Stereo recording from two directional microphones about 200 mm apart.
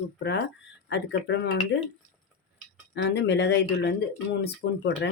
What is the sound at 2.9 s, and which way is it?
Speech, 65° left (ahead or behind).